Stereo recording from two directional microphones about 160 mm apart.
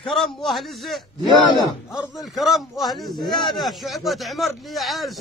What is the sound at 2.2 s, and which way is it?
A man's voice, centre (ahead or behind).